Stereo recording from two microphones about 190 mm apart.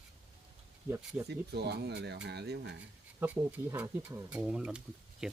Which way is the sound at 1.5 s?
60° right (ahead or behind).